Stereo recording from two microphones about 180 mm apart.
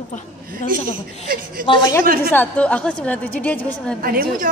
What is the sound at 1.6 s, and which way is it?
Speech, 50° right (ahead or behind).